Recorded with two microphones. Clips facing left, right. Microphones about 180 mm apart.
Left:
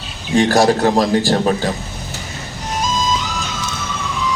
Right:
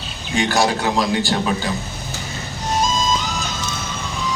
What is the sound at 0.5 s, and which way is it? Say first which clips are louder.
A man's voice: left 4 dB; 45° left (ahead or behind).